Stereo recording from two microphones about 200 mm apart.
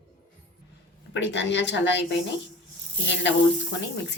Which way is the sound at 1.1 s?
60° left (ahead or behind).